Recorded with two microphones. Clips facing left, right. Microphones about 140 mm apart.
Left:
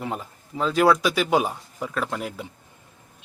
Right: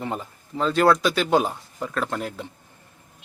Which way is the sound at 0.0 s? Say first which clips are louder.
Right 1 dB; 5° left (ahead or behind).